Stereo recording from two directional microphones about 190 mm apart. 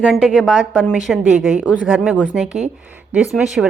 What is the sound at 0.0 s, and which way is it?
Speech, centre (ahead or behind).